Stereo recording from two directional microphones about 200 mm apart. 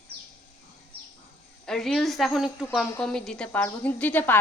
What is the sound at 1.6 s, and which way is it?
A woman's voice, centre (ahead or behind).